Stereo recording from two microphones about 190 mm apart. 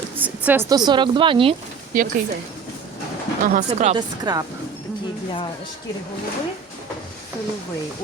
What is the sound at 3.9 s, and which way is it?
Speech, 20° right (ahead or behind).